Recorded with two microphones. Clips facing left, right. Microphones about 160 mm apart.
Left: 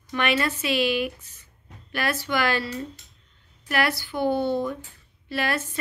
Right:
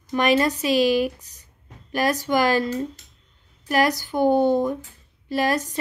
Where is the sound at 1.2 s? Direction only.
15° right (ahead or behind).